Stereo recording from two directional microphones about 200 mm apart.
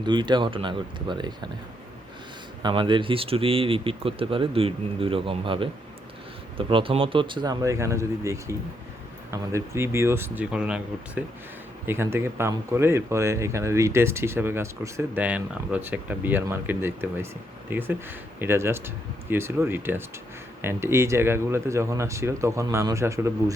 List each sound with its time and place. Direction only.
0.0 s speech: 25° right (ahead or behind)
2.6 s speech: 20° right (ahead or behind)